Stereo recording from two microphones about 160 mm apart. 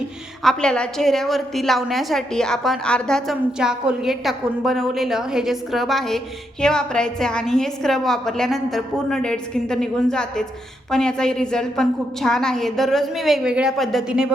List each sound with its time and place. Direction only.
0.4 s a woman's voice: 5° left (ahead or behind)